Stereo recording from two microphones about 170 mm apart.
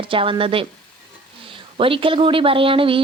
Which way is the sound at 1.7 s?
30° right (ahead or behind).